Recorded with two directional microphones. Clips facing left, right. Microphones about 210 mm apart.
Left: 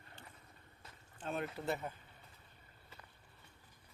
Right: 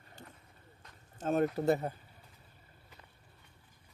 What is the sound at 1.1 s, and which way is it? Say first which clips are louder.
Speech: right 11 dB; 45° right (ahead or behind).